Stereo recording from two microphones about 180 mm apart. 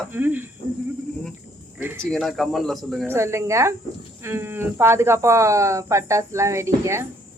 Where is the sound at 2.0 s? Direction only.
Centre (ahead or behind).